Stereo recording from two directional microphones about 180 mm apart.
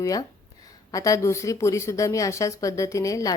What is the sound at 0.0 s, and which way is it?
A woman's voice, 20° left (ahead or behind).